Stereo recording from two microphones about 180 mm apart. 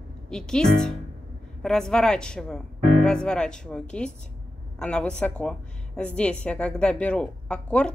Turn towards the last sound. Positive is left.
turn(degrees=5)  # may be behind; listen again after turning